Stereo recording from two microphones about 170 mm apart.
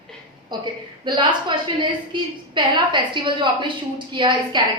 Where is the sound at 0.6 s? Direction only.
25° right (ahead or behind).